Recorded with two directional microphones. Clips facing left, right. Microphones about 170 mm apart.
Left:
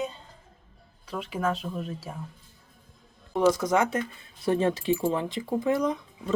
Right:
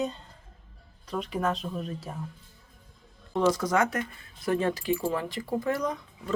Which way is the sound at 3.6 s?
20° left (ahead or behind).